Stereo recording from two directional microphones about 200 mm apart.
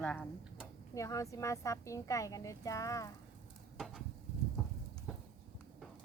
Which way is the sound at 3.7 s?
Centre (ahead or behind).